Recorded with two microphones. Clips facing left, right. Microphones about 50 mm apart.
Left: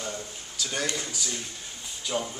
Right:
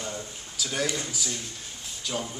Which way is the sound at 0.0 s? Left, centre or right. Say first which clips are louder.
Even; centre.